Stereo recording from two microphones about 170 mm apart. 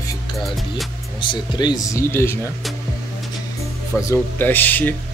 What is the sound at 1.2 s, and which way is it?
Speech, 25° left (ahead or behind).